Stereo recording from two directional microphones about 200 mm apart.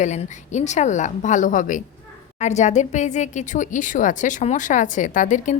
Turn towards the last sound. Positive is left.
turn(degrees=40)  # may be behind; listen again after turning